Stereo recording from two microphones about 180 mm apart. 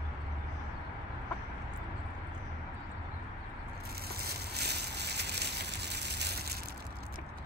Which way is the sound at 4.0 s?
60° right (ahead or behind).